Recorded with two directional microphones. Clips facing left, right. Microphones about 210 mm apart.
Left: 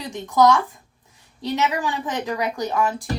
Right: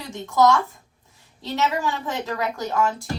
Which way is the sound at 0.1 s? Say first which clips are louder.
Left 1 dB; 15° left (ahead or behind).